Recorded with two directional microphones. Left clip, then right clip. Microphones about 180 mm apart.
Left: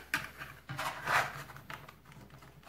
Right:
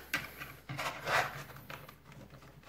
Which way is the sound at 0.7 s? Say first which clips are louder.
Left 1 dB; 5° right (ahead or behind).